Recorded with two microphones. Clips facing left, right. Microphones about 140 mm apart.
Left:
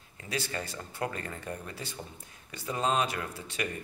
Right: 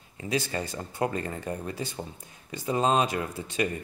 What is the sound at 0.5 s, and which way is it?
Speech, 25° right (ahead or behind).